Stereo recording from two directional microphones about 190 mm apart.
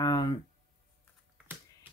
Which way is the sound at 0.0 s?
20° left (ahead or behind).